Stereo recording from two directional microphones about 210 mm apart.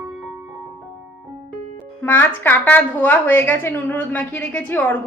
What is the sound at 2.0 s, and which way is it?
A woman's voice, 10° left (ahead or behind).